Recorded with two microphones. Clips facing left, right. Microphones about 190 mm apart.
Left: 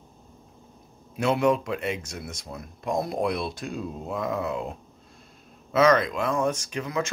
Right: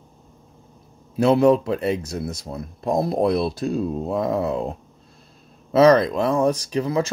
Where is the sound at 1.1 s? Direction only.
35° right (ahead or behind).